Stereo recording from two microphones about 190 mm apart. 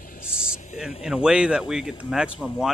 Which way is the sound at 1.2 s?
5° right (ahead or behind).